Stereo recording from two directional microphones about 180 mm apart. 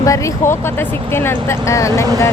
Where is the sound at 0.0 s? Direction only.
20° left (ahead or behind).